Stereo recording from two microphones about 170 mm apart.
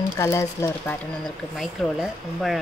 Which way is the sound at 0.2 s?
15° left (ahead or behind).